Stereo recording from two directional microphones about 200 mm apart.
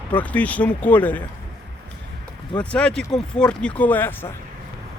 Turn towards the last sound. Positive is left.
turn(degrees=10)  # may be behind; listen again after turning